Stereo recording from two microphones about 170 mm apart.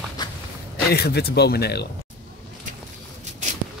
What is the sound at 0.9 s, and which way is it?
Speech, 70° left (ahead or behind).